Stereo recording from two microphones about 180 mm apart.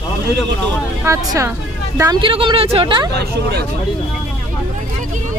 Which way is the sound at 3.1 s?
65° right (ahead or behind).